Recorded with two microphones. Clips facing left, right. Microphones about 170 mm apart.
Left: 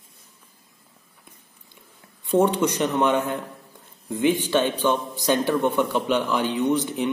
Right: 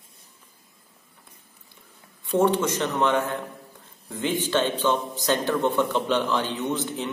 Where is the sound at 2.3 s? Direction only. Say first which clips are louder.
Left 2 dB; 15° left (ahead or behind).